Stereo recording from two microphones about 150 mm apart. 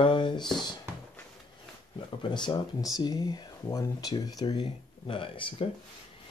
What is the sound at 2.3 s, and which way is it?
Speech, 30° left (ahead or behind).